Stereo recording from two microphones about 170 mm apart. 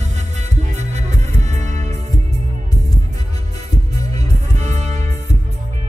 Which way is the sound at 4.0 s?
40° right (ahead or behind).